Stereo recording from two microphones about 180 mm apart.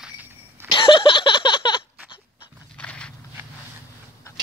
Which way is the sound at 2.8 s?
5° left (ahead or behind).